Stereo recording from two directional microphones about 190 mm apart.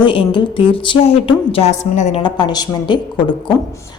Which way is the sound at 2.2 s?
25° left (ahead or behind).